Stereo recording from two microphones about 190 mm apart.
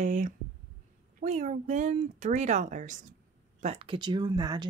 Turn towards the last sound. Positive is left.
turn(degrees=-20)  # may be behind; listen again after turning